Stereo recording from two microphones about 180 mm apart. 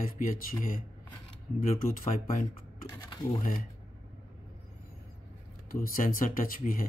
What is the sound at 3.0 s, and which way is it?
Speech, 20° left (ahead or behind).